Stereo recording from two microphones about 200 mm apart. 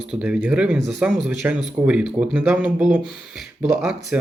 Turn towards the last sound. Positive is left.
turn(degrees=-5)  # may be behind; listen again after turning